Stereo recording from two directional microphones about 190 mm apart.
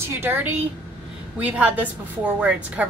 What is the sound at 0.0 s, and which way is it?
A woman's voice, 10° right (ahead or behind).